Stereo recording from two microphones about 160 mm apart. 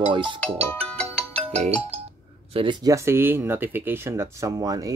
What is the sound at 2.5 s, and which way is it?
Speech, 30° right (ahead or behind).